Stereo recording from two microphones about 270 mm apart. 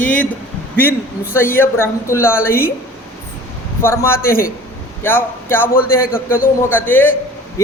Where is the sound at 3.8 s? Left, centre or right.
Centre.